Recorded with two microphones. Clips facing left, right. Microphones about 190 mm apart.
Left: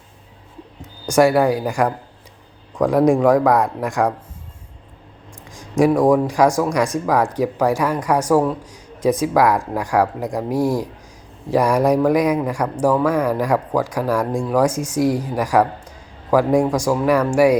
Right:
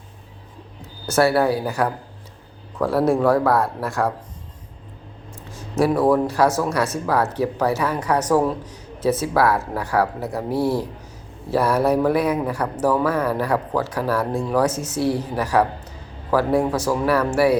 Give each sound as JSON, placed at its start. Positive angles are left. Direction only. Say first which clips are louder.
{"t": 0.8, "sound": "speech", "louder": "left 4 dB", "side_deg": 15}
{"t": 5.5, "sound": "a sound", "louder": "left 4 dB", "side_deg": 15}
{"t": 6.2, "sound": "speech", "louder": "left 3 dB", "side_deg": 15}